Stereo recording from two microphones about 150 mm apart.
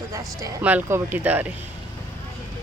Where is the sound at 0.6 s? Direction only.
15° right (ahead or behind).